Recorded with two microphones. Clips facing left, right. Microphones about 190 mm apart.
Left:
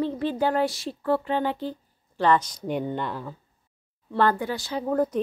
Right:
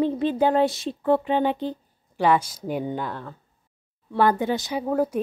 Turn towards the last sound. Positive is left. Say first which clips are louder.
# right 1 dB
turn(degrees=-10)  # may be behind; listen again after turning